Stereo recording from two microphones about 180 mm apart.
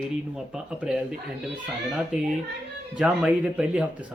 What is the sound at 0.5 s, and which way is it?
Speech, 5° right (ahead or behind).